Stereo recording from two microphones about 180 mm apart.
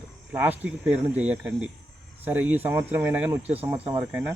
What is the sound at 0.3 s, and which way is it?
Speech, 10° right (ahead or behind).